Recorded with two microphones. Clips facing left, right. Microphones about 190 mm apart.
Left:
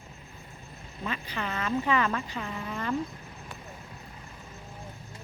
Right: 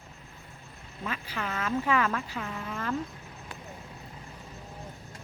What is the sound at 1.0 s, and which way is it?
Speech, 5° right (ahead or behind).